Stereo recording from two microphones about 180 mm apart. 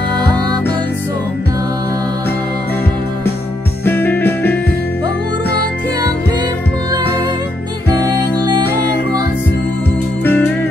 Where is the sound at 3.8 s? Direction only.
10° left (ahead or behind).